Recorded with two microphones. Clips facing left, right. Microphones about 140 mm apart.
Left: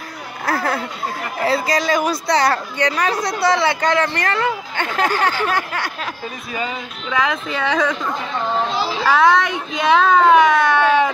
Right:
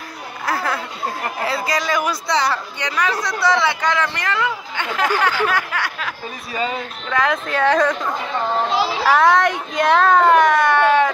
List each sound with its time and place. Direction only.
0.5 s speech: 40° left (ahead or behind)
7.1 s a child's voice: 5° left (ahead or behind)
9.0 s a child's voice: centre (ahead or behind)